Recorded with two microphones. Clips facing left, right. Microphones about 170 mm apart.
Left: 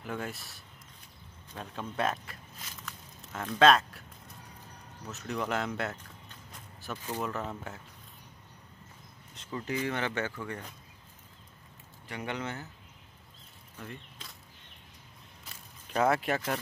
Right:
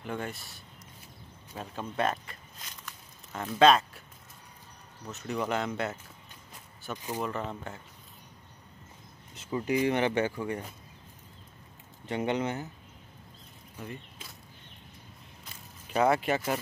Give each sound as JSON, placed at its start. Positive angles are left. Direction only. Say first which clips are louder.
{"t": 0.0, "sound": "speech", "louder": "right 1 dB", "side_deg": 0}
{"t": 3.3, "sound": "speech", "louder": "right 1 dB", "side_deg": 0}
{"t": 5.0, "sound": "speech", "louder": "right 2 dB", "side_deg": 0}
{"t": 6.5, "sound": "a sound", "louder": "right 1 dB", "side_deg": 0}
{"t": 7.0, "sound": "speech", "louder": "right 1 dB", "side_deg": -10}
{"t": 7.3, "sound": "speech", "louder": "right 1 dB", "side_deg": 0}
{"t": 9.5, "sound": "speech", "louder": "right 6 dB", "side_deg": -15}
{"t": 12.1, "sound": "speech", "louder": "right 7 dB", "side_deg": -20}
{"t": 13.7, "sound": "a sound", "louder": "right 3 dB", "side_deg": -5}
{"t": 15.9, "sound": "speech", "louder": "right 2 dB", "side_deg": 0}